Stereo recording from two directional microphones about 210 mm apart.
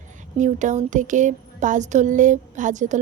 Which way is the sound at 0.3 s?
35° right (ahead or behind).